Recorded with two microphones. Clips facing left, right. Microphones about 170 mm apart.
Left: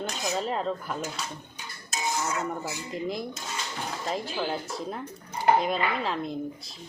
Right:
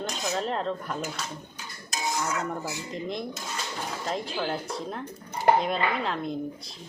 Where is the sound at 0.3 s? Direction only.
5° left (ahead or behind).